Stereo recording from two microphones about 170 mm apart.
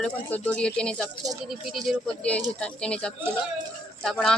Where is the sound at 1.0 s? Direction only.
20° right (ahead or behind).